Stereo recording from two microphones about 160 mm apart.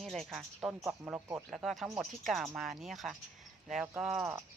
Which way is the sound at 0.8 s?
15° right (ahead or behind).